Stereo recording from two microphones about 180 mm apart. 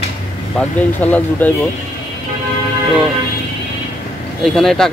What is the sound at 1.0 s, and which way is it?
Speech, 10° left (ahead or behind).